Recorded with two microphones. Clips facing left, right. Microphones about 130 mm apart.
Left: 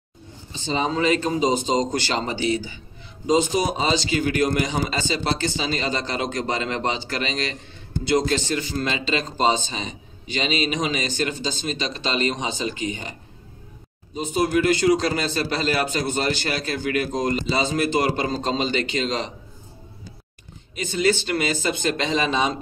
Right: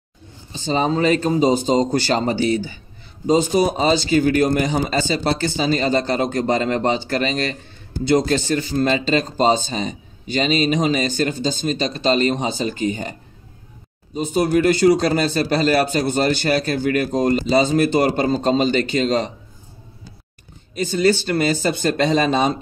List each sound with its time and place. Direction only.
0.5 s a man's voice: 45° right (ahead or behind)
14.1 s a man's voice: 45° right (ahead or behind)
20.7 s speech: 40° right (ahead or behind)